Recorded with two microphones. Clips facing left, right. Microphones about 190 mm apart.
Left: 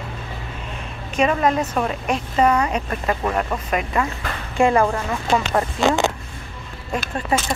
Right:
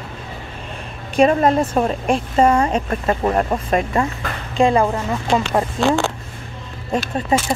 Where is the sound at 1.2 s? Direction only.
35° right (ahead or behind).